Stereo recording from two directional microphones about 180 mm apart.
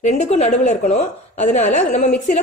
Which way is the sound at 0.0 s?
40° left (ahead or behind).